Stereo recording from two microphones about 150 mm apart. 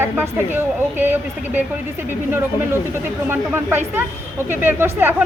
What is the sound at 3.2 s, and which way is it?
A woman's voice, 15° right (ahead or behind).